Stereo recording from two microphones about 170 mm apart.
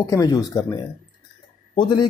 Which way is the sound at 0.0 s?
20° left (ahead or behind).